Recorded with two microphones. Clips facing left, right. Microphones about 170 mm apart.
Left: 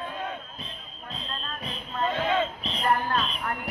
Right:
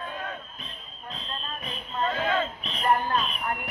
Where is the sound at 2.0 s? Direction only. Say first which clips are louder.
Left 1 dB; 20° left (ahead or behind).